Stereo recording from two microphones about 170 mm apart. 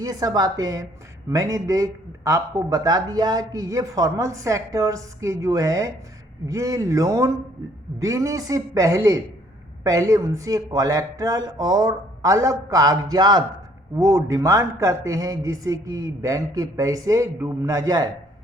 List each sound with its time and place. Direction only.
0.0 s speech: 25° right (ahead or behind)